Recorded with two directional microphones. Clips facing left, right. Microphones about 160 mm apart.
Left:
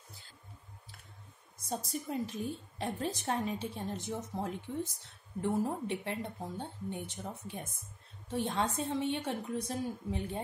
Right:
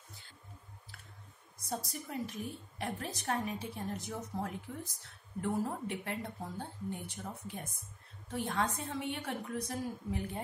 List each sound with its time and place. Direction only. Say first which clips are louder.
1.7 s a woman's voice: left 3 dB; 25° left (ahead or behind)